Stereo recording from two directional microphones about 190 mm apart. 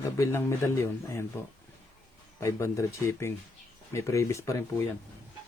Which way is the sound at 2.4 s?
15° left (ahead or behind).